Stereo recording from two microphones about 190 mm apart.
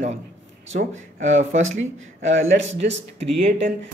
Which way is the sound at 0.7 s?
40° right (ahead or behind).